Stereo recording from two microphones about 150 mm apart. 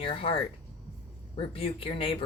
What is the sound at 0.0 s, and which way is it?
A woman's voice, 35° left (ahead or behind).